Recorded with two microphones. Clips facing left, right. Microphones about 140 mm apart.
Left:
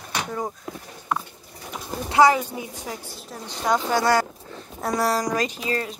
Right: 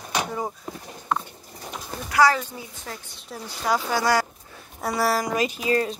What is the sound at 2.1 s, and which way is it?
Speech, 20° left (ahead or behind).